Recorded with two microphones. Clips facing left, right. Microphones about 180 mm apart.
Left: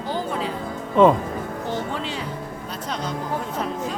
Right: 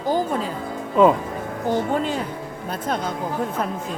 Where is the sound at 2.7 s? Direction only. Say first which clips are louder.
Right 5 dB; 50° right (ahead or behind).